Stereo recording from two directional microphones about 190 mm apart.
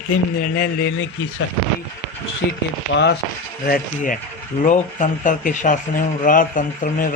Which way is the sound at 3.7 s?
45° left (ahead or behind).